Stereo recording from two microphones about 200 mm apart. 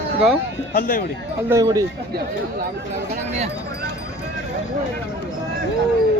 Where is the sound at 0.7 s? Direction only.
45° left (ahead or behind).